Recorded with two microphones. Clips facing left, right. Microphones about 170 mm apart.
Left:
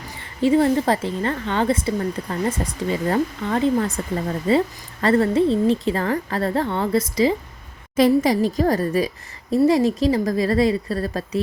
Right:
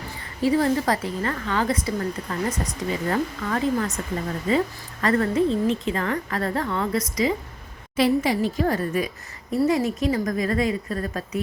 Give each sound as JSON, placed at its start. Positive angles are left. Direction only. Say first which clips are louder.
{"t": 0.4, "sound": "a woman's voice", "louder": "left 4 dB", "side_deg": 25}
{"t": 7.9, "sound": "a woman's voice", "louder": "left 4 dB", "side_deg": 40}